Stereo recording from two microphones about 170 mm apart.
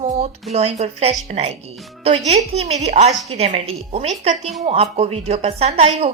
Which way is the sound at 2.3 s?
40° right (ahead or behind).